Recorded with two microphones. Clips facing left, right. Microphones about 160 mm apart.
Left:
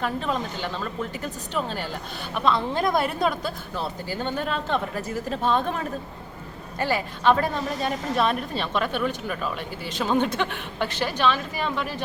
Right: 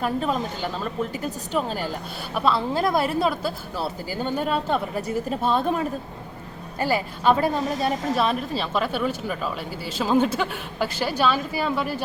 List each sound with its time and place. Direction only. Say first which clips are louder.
0.0 s speech: right 3 dB; 5° right (ahead or behind)
2.3 s speech: right 1 dB; 5° right (ahead or behind)
6.8 s a woman's voice: right 1 dB; 10° right (ahead or behind)